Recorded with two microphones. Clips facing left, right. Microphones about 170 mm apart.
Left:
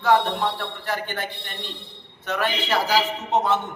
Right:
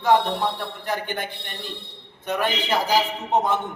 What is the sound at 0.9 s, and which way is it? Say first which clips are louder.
A man's voice: right 1 dB; 15° right (ahead or behind).